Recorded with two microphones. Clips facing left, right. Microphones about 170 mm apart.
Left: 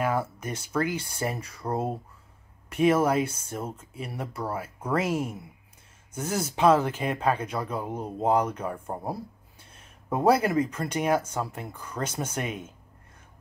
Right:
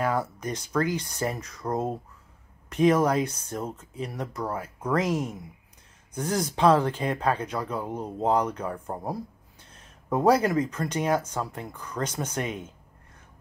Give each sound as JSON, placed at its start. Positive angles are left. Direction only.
{"t": 0.4, "sound": "speech", "side_deg": 10}
{"t": 6.3, "sound": "speech", "side_deg": 10}